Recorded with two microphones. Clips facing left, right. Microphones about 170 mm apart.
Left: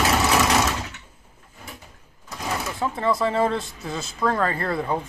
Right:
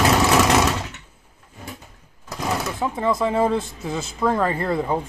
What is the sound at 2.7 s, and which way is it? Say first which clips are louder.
Speech: left 1 dB; 15° right (ahead or behind).